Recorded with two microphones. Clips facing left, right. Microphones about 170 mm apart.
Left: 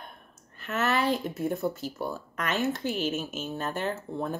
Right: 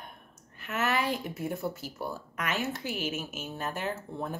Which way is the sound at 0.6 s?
10° right (ahead or behind).